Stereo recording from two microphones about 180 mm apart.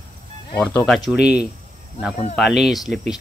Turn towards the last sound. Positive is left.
turn(degrees=0)  # may be behind; listen again after turning